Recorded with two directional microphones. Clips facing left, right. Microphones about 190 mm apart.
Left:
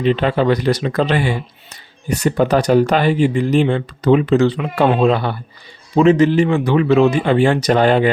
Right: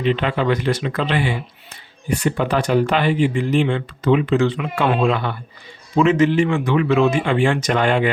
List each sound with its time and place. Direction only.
0.0 s speech: 40° left (ahead or behind)